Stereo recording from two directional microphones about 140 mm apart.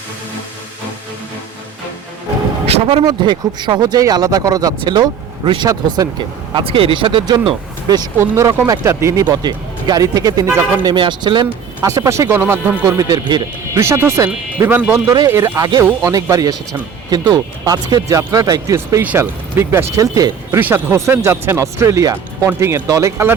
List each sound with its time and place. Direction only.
2.6 s speech: 40° right (ahead or behind)
8.2 s speech: 20° right (ahead or behind)
10.9 s speech: 35° right (ahead or behind)
13.7 s speech: 20° right (ahead or behind)
14.9 s speech: 25° right (ahead or behind)
20.6 s speech: 15° right (ahead or behind)